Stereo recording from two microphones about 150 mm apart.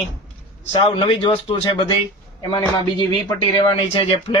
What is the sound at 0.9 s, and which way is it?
Speech, 40° left (ahead or behind).